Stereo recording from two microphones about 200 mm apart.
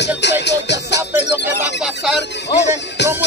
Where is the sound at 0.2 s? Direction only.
60° left (ahead or behind).